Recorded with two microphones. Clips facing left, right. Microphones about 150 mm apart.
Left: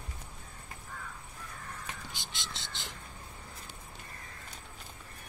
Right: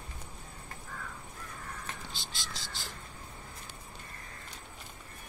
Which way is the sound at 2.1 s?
20° left (ahead or behind).